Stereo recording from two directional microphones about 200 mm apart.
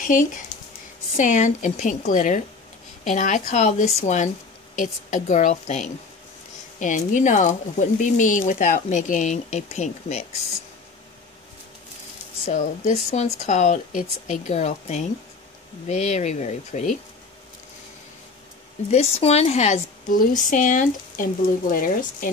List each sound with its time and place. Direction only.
0.0 s speech: 40° left (ahead or behind)
12.4 s speech: 35° left (ahead or behind)
18.9 s speech: 30° left (ahead or behind)